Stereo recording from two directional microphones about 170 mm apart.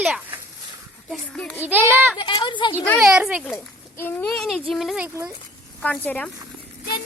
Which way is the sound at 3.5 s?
10° left (ahead or behind).